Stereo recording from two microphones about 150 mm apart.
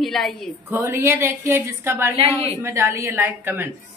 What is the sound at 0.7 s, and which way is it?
A woman's voice, 15° right (ahead or behind).